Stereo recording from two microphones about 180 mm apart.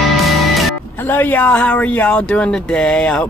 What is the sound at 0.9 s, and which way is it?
Speech, 10° left (ahead or behind).